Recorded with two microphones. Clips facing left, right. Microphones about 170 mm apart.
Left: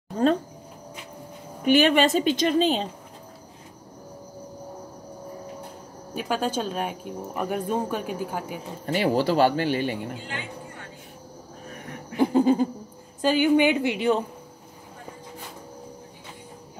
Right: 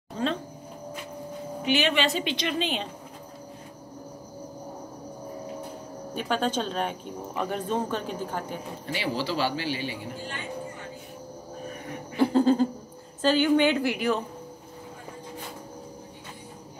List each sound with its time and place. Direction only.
1.6 s a woman's voice: 50° left (ahead or behind)
6.1 s speech: 10° left (ahead or behind)
8.8 s a woman's voice: 50° left (ahead or behind)
12.2 s a sound: 15° left (ahead or behind)
13.2 s speech: 15° left (ahead or behind)